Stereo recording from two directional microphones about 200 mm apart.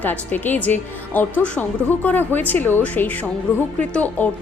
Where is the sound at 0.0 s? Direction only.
10° left (ahead or behind).